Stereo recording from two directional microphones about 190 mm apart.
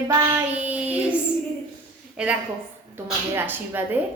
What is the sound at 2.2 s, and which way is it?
A woman's voice, 5° right (ahead or behind).